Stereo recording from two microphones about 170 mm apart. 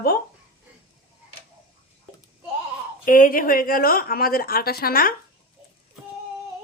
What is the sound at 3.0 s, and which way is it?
A woman's voice, 55° left (ahead or behind).